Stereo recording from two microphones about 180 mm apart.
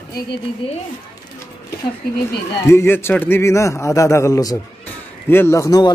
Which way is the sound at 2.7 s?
15° left (ahead or behind).